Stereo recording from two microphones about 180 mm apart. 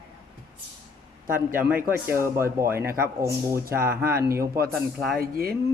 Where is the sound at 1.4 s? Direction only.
10° right (ahead or behind).